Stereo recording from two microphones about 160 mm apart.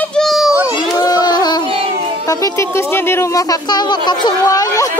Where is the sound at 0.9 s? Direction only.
25° left (ahead or behind).